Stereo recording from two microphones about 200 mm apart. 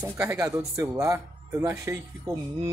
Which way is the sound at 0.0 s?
15° right (ahead or behind).